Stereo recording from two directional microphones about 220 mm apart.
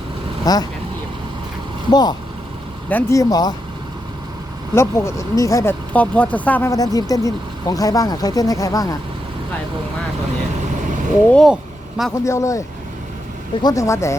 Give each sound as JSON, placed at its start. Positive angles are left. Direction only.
{"t": 0.4, "sound": "speech", "side_deg": 15}
{"t": 1.9, "sound": "speech", "side_deg": 20}
{"t": 4.7, "sound": "speech", "side_deg": 10}
{"t": 11.3, "sound": "speech", "side_deg": 5}
{"t": 12.1, "sound": "speech", "side_deg": 15}